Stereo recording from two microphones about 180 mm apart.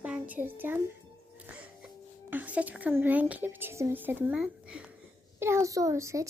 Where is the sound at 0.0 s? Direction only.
10° right (ahead or behind).